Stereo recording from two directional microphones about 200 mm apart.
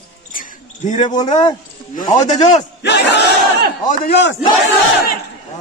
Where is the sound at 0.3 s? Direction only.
40° left (ahead or behind).